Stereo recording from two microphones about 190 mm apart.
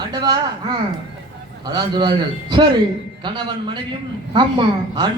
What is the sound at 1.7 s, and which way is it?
A man's voice, 20° right (ahead or behind).